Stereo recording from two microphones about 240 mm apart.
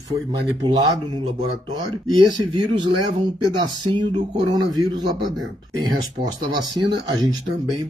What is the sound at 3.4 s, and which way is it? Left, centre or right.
Speech, centre.